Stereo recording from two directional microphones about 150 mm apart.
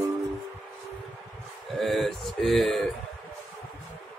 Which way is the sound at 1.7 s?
Centre (ahead or behind).